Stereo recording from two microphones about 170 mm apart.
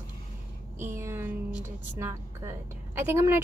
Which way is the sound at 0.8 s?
15° right (ahead or behind).